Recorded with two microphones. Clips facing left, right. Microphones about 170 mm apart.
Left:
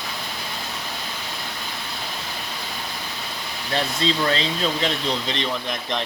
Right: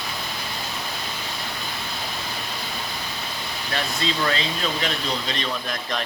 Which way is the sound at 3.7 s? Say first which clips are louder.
Left 4 dB; 30° left (ahead or behind).